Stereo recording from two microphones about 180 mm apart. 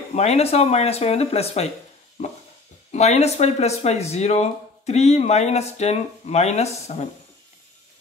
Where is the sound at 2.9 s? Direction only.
40° left (ahead or behind).